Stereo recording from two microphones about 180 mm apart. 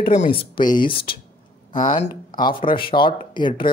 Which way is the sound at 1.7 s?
45° left (ahead or behind).